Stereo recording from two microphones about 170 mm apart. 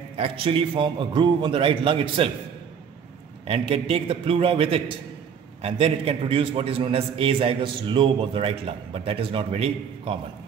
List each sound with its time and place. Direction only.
0.2 s a man's voice: 35° right (ahead or behind)
3.4 s a man's voice: 35° right (ahead or behind)